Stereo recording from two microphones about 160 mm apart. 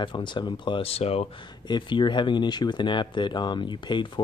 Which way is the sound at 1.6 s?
30° left (ahead or behind).